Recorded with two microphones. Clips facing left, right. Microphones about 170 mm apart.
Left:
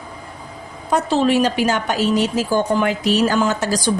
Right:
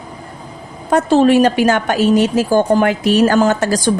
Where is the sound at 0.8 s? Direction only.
50° right (ahead or behind).